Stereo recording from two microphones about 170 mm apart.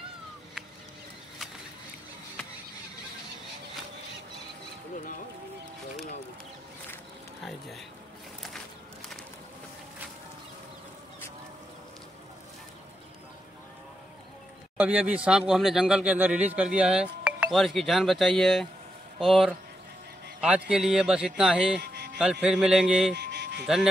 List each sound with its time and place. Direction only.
14.8 s speech: 10° right (ahead or behind)
21.9 s a sound: 75° right (ahead or behind)
22.2 s speech: 5° right (ahead or behind)
23.1 s music: 80° right